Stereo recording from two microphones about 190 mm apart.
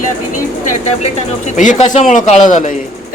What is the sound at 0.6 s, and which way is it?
Speech, 35° left (ahead or behind).